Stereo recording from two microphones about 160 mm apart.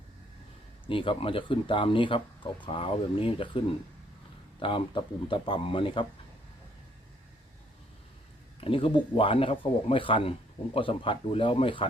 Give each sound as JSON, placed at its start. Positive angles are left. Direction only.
{"t": 0.9, "sound": "speech", "side_deg": 35}
{"t": 4.6, "sound": "speech", "side_deg": 30}
{"t": 8.6, "sound": "speech", "side_deg": 35}